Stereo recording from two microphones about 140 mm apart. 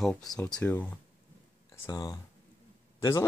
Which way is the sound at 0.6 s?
10° left (ahead or behind).